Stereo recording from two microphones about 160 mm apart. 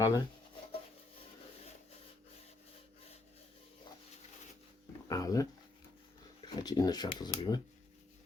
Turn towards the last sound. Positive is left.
turn(degrees=25)  # may be behind; listen again after turning